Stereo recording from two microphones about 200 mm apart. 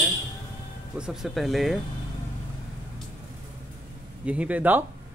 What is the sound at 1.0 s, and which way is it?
Speech, centre (ahead or behind).